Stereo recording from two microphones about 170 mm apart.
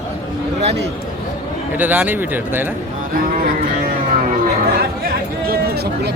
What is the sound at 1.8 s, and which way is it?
Speech, 10° right (ahead or behind).